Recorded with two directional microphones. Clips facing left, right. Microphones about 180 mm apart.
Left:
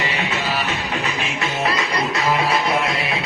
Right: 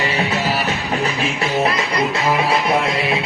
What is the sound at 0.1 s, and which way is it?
Music, 35° right (ahead or behind).